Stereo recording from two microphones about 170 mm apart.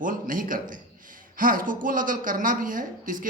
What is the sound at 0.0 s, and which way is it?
A woman's voice, 50° right (ahead or behind).